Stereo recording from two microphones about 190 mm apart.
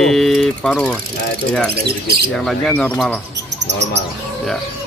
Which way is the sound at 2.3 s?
Centre (ahead or behind).